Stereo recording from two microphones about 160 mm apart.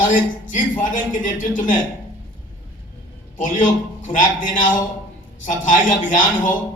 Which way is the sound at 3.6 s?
55° left (ahead or behind).